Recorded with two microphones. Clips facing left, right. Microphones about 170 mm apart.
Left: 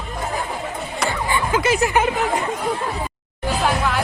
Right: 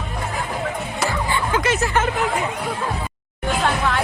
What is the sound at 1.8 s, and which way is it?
Speech, 15° left (ahead or behind).